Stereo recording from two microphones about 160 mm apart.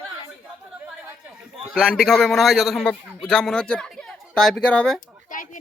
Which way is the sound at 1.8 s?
5° left (ahead or behind).